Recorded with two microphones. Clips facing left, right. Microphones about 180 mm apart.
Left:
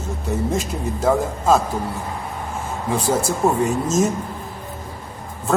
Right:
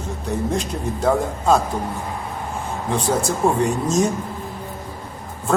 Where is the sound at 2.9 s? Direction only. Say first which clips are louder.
Left 1 dB; 5° left (ahead or behind).